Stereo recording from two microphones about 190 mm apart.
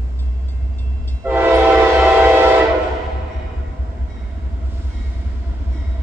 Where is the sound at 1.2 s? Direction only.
10° right (ahead or behind).